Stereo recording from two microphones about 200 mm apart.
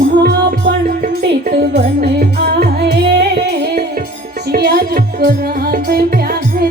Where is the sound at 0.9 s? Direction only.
45° right (ahead or behind).